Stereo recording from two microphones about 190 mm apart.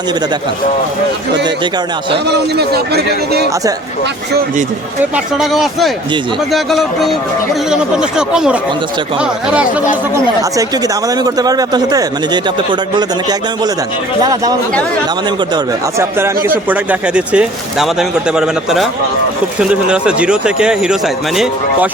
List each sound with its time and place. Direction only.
2.3 s a man's voice: 60° right (ahead or behind)
5.1 s speech: centre (ahead or behind)
11.2 s speech: 20° right (ahead or behind)
14.2 s speech: 20° right (ahead or behind)
15.5 s speech: 15° right (ahead or behind)